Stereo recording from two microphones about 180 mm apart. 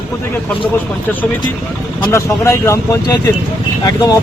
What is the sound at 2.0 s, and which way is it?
Speech, 15° left (ahead or behind).